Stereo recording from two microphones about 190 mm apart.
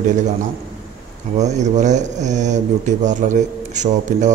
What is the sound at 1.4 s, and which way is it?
A man's voice, 40° right (ahead or behind).